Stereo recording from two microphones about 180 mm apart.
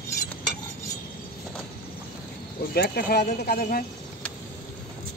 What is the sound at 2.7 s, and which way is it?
Speech, 60° left (ahead or behind).